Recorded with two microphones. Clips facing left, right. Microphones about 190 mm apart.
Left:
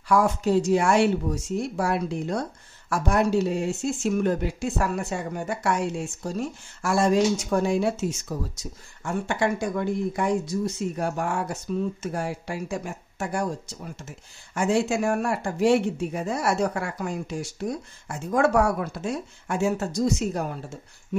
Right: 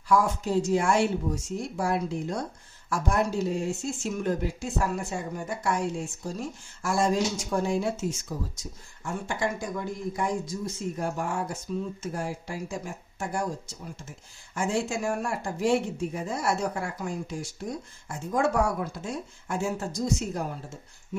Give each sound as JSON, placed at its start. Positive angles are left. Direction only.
{"t": 0.1, "sound": "speech", "side_deg": 70}